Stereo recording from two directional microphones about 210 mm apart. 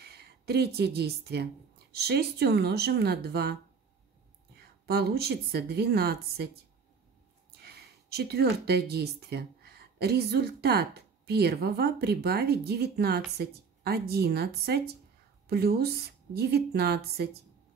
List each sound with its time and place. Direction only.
0.0 s a sound: 50° right (ahead or behind)
0.7 s a woman's voice: 50° right (ahead or behind)
4.6 s a woman's voice: 50° right (ahead or behind)
7.5 s a woman's voice: 50° right (ahead or behind)